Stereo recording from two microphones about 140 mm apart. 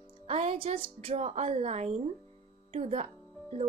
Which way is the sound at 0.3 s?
45° right (ahead or behind).